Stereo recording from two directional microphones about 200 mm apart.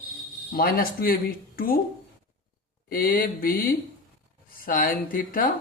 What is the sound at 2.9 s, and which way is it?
Speech, 45° left (ahead or behind).